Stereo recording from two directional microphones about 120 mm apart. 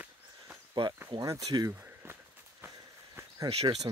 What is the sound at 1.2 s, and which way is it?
Speech, 30° right (ahead or behind).